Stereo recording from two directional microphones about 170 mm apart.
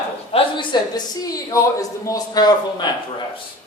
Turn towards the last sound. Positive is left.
turn(degrees=25)  # may be behind; listen again after turning